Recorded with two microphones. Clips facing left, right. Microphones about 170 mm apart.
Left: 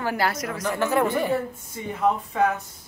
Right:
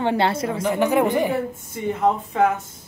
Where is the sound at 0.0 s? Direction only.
25° right (ahead or behind).